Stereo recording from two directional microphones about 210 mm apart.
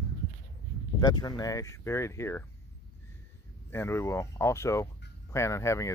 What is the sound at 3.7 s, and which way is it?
Speech, 10° left (ahead or behind).